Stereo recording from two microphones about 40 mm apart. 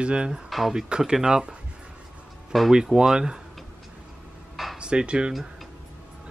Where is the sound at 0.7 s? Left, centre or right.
Centre.